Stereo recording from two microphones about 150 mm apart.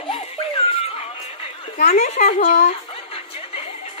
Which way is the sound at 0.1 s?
40° left (ahead or behind).